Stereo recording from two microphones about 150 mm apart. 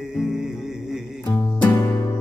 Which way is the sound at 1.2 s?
25° left (ahead or behind).